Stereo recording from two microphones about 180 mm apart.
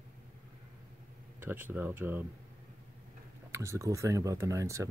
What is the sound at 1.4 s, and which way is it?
Speech, 10° right (ahead or behind).